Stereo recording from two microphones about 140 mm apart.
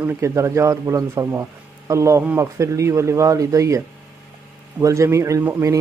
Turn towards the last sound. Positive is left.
turn(degrees=-20)  # may be behind; listen again after turning